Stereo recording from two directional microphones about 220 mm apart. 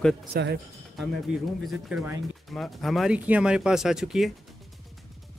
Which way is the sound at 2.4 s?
Centre (ahead or behind).